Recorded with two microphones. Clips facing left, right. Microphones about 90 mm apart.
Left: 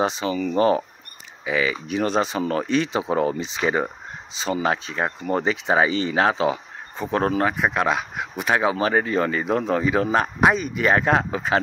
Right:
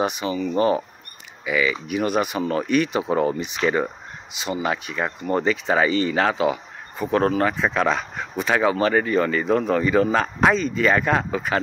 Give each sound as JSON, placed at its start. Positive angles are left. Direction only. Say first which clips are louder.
{"t": 0.0, "sound": "speech", "louder": "left 1 dB", "side_deg": 25}
{"t": 0.3, "sound": "speech", "louder": "even", "side_deg": -35}
{"t": 1.4, "sound": "speech", "louder": "right 1 dB", "side_deg": 35}
{"t": 7.4, "sound": "speech", "louder": "even", "side_deg": 15}